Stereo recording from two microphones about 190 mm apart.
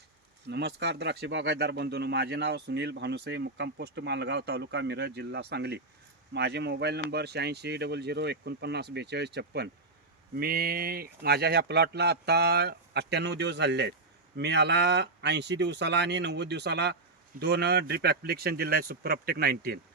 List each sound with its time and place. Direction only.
0.4 s speech: 65° right (ahead or behind)